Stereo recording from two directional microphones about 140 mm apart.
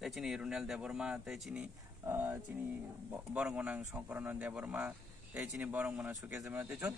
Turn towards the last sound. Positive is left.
turn(degrees=-15)  # may be behind; listen again after turning